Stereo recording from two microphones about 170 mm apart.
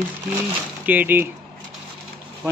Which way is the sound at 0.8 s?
10° right (ahead or behind).